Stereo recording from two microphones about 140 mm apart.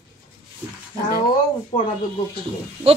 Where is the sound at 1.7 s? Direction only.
60° left (ahead or behind).